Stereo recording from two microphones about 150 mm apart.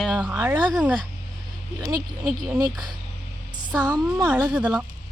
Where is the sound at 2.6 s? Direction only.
25° right (ahead or behind).